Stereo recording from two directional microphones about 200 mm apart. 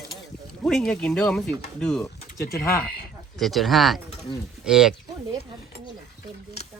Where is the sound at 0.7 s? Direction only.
5° left (ahead or behind).